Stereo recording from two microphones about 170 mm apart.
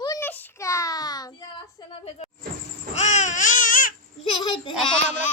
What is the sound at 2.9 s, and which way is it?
Baby cry, 45° left (ahead or behind).